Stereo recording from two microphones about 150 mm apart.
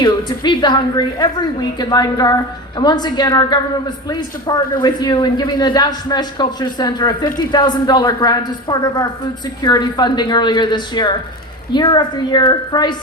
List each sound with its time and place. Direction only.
0.0 s a woman's voice: 30° left (ahead or behind)